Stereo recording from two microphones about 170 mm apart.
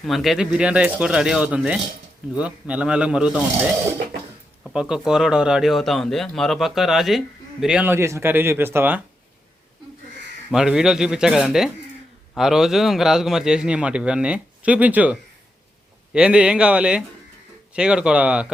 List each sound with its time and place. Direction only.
0.0 s a man's voice: centre (ahead or behind)
4.6 s a man's voice: 5° right (ahead or behind)
10.5 s a man's voice: 5° right (ahead or behind)